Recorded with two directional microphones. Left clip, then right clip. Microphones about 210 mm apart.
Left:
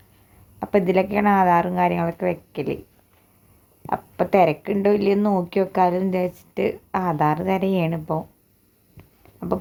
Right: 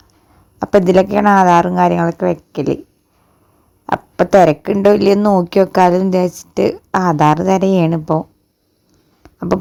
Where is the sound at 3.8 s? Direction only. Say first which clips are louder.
Right 8 dB; 35° right (ahead or behind).